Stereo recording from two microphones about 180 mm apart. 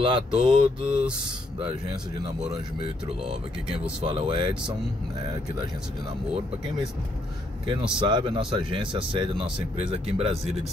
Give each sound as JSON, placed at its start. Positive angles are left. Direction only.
{"t": 0.0, "sound": "speech", "side_deg": -30}
{"t": 4.0, "sound": "speech", "side_deg": -30}
{"t": 8.0, "sound": "speech", "side_deg": -25}